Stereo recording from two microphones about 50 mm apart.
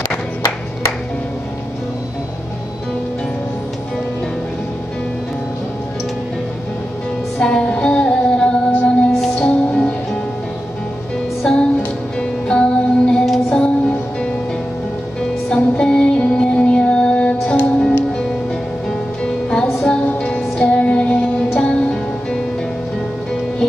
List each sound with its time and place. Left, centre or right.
7.3 s music: centre
11.4 s music: centre
13.2 s music: centre
13.6 s music: centre
15.5 s music: centre